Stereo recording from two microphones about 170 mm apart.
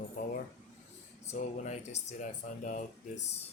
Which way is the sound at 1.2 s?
45° left (ahead or behind).